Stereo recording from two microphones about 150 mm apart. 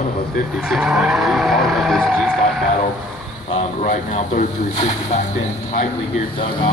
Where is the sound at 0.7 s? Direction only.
5° right (ahead or behind).